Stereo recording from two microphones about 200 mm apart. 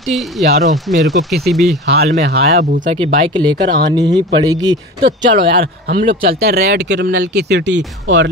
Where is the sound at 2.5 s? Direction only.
30° right (ahead or behind).